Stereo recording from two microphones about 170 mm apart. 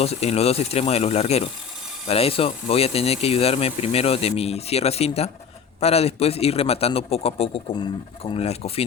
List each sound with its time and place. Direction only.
0.0 s speech: 35° left (ahead or behind)